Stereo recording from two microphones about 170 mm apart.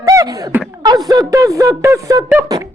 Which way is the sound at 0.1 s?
20° right (ahead or behind).